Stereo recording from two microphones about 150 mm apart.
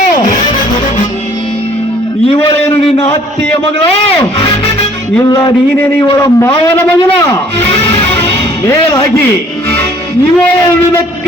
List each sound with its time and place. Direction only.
6.1 s a man's voice: 20° left (ahead or behind)
8.6 s a man's voice: 20° left (ahead or behind)